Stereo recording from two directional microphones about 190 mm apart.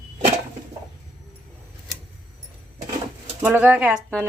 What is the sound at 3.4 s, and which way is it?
Speech, 10° right (ahead or behind).